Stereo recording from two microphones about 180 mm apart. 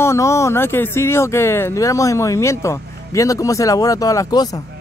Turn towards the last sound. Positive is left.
turn(degrees=20)  # may be behind; listen again after turning